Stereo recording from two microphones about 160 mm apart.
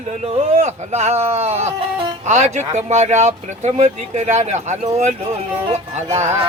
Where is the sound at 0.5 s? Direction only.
45° right (ahead or behind).